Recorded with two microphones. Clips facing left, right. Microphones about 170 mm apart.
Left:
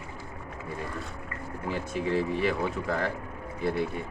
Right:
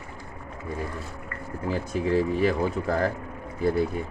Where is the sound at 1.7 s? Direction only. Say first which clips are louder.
Right 4 dB; 40° right (ahead or behind).